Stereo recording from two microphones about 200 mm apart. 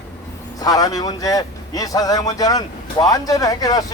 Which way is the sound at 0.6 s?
20° left (ahead or behind).